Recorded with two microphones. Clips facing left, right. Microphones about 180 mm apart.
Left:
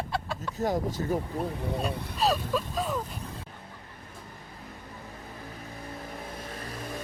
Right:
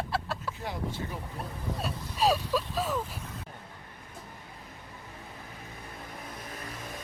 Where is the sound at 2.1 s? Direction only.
5° right (ahead or behind).